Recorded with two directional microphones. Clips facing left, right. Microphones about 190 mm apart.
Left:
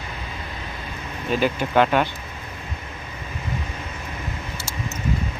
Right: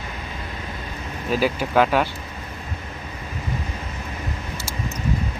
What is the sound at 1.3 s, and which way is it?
Speech, 5° right (ahead or behind).